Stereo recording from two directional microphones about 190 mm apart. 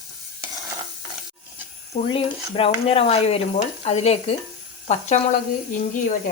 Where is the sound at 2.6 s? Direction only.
30° left (ahead or behind).